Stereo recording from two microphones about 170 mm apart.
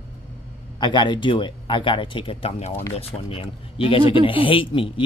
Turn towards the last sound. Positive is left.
turn(degrees=30)  # may be behind; listen again after turning